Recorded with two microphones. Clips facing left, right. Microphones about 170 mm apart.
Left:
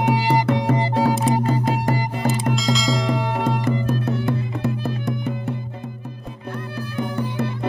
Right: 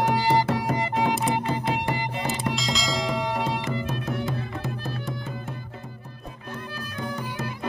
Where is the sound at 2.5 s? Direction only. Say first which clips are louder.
Left 6 dB; centre (ahead or behind).